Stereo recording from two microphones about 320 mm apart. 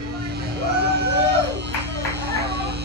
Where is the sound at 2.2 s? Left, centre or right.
Right.